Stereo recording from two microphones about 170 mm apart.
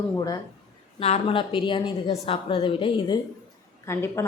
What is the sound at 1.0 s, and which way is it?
A woman's voice, 35° left (ahead or behind).